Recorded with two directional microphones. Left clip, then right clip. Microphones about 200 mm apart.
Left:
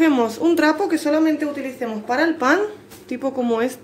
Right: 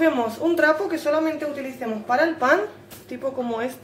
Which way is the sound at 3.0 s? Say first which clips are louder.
Left 5 dB; 35° left (ahead or behind).